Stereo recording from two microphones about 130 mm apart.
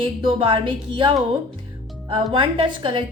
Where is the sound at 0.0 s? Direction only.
40° right (ahead or behind).